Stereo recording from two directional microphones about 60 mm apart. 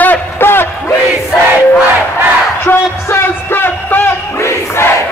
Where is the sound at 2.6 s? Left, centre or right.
Left.